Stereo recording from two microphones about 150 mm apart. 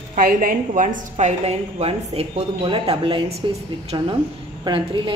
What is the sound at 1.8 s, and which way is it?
A woman's voice, 45° right (ahead or behind).